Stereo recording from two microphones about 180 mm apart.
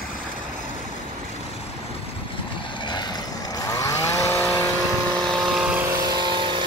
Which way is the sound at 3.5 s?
20° left (ahead or behind).